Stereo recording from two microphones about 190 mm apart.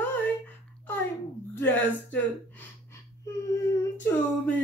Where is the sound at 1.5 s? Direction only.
10° left (ahead or behind).